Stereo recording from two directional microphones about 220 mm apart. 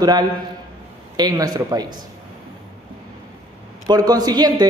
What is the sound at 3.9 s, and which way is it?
Speech, 15° right (ahead or behind).